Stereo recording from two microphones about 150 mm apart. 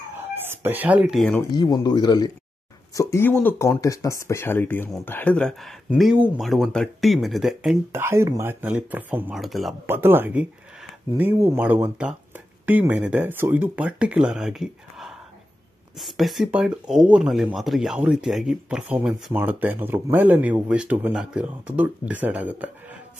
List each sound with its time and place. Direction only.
0.2 s chicken: 15° right (ahead or behind)
1.5 s speech: 25° left (ahead or behind); by 7.7 s centre (ahead or behind)
7.9 s speech: 15° right (ahead or behind)
9.3 s speech: centre (ahead or behind)
9.8 s speech: 15° right (ahead or behind)